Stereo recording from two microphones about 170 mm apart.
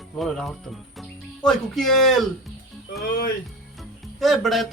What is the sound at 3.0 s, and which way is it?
Speech, 60° left (ahead or behind).